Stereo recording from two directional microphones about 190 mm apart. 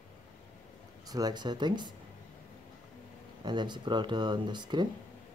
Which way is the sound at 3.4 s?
25° right (ahead or behind).